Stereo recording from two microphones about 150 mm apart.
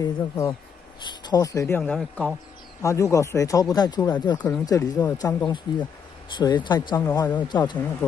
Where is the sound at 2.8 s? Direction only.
20° left (ahead or behind).